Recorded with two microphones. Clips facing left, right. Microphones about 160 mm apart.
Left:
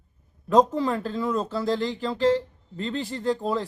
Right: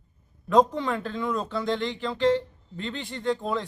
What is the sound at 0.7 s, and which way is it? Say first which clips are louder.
Speech: left 3 dB; 35° left (ahead or behind).